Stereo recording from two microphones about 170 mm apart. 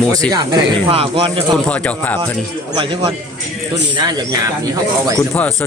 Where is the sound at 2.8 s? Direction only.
30° right (ahead or behind).